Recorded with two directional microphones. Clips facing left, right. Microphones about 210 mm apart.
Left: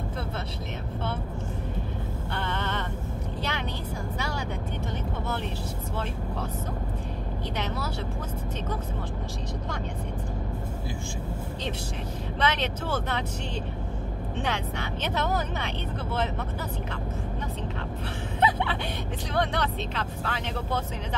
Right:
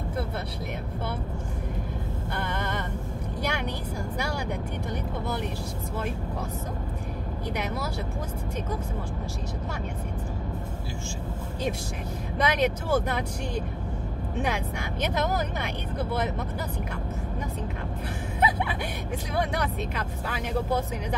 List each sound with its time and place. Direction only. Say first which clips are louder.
2.3 s a sound: even; 10° right (ahead or behind)
7.5 s speech: right 1 dB; 10° right (ahead or behind)
12.4 s speech: right 3 dB; 10° right (ahead or behind)
14.4 s speech: right 1 dB; 10° right (ahead or behind)
18.4 s speech: left 1 dB; 10° right (ahead or behind)